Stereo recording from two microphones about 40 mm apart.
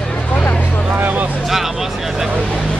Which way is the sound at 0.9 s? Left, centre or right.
Right.